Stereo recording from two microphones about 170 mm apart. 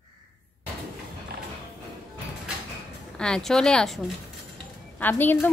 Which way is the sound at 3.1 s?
5° left (ahead or behind).